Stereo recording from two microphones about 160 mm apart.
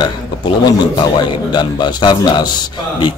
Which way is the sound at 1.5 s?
30° left (ahead or behind).